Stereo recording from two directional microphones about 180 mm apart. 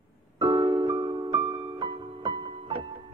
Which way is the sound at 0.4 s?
25° right (ahead or behind).